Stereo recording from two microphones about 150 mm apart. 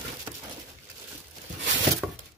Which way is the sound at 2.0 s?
Centre (ahead or behind).